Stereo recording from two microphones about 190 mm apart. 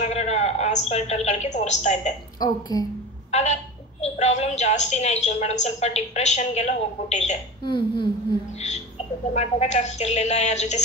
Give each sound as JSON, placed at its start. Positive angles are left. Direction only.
{"t": 0.0, "sound": "a woman's voice", "side_deg": 35}
{"t": 2.4, "sound": "speech", "side_deg": 20}
{"t": 3.3, "sound": "telephone", "side_deg": 35}
{"t": 4.0, "sound": "a woman's voice", "side_deg": 35}
{"t": 7.6, "sound": "speech", "side_deg": 25}
{"t": 8.5, "sound": "a sound", "side_deg": 35}
{"t": 9.3, "sound": "a woman's voice", "side_deg": 35}